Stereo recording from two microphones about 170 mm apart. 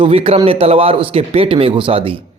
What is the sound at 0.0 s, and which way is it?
Speech, 35° right (ahead or behind).